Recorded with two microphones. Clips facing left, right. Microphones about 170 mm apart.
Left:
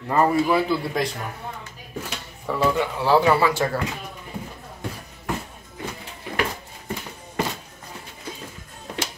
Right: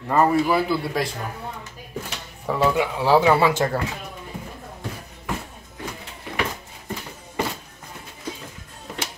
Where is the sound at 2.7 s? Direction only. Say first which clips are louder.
Right 1 dB; 10° right (ahead or behind).